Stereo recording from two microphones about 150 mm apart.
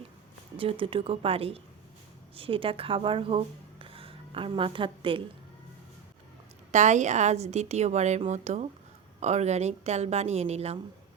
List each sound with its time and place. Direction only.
0.5 s speech: 35° right (ahead or behind)
6.7 s a woman's voice: 50° right (ahead or behind)